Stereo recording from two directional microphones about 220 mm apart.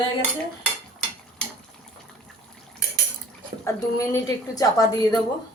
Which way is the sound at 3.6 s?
15° left (ahead or behind).